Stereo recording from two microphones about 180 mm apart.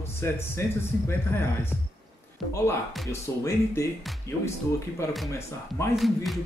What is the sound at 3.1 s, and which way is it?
Speech, 15° left (ahead or behind).